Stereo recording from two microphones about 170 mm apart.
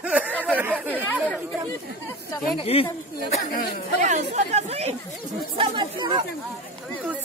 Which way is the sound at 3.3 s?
50° left (ahead or behind).